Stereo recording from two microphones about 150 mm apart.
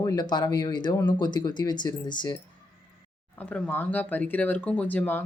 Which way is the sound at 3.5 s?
10° left (ahead or behind).